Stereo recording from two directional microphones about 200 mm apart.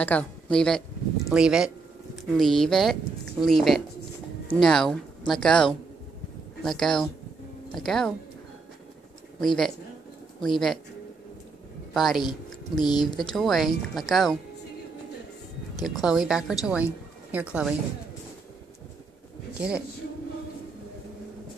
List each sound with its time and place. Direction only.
0.0 s a woman's voice: 5° left (ahead or behind)
10.4 s speech: centre (ahead or behind)
11.9 s speech: centre (ahead or behind)
12.2 s speech: 20° left (ahead or behind)
13.4 s speech: centre (ahead or behind)
15.8 s speech: centre (ahead or behind)
19.6 s speech: 5° right (ahead or behind)